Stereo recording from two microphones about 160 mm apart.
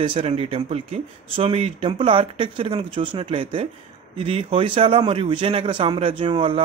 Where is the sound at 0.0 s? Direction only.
35° right (ahead or behind).